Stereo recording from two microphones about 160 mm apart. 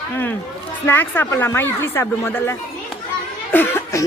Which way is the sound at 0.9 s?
15° left (ahead or behind).